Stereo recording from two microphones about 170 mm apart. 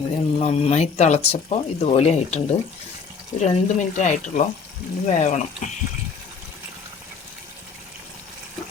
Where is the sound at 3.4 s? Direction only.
45° left (ahead or behind).